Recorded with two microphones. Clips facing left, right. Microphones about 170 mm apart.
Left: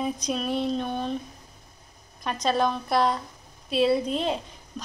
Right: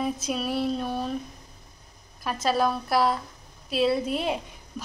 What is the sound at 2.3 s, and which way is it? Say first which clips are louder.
A woman's voice: even; 5° right (ahead or behind).